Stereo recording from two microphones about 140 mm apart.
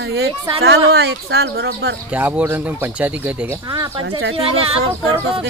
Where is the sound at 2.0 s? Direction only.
10° right (ahead or behind).